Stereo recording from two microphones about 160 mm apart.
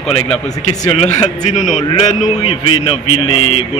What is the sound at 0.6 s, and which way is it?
Speech, 45° left (ahead or behind).